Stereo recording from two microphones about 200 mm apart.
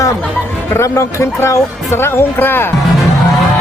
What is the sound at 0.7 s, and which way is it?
Speech, 15° left (ahead or behind).